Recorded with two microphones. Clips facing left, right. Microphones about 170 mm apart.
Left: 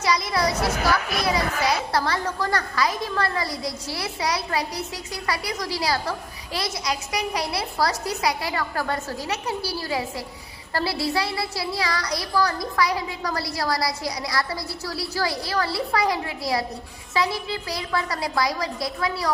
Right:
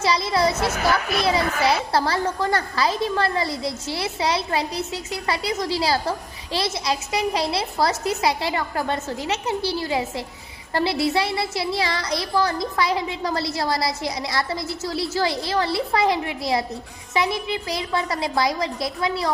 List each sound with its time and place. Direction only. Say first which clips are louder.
0.0 s a woman's voice: right 3 dB; 30° right (ahead or behind)